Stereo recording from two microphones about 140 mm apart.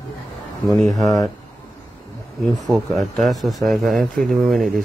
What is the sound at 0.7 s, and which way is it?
Speech, centre (ahead or behind).